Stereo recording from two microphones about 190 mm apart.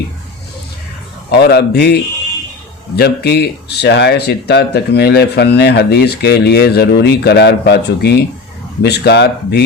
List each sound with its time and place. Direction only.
1.3 s speech: 60° left (ahead or behind)